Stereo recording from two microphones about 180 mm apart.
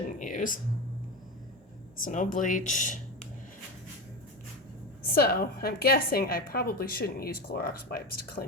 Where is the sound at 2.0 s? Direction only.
45° left (ahead or behind).